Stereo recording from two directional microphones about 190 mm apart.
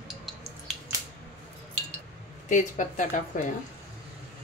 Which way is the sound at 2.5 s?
40° left (ahead or behind).